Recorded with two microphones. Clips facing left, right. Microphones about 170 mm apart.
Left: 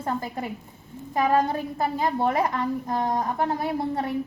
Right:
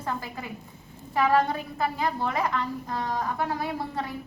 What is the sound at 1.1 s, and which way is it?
A woman's voice, 20° left (ahead or behind).